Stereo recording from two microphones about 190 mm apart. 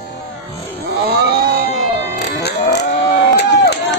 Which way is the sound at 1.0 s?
60° right (ahead or behind).